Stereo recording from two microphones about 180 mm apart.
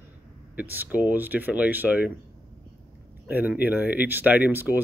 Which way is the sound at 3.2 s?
10° right (ahead or behind).